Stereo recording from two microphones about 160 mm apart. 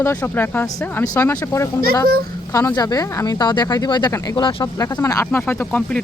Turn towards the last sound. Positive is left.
turn(degrees=5)  # may be behind; listen again after turning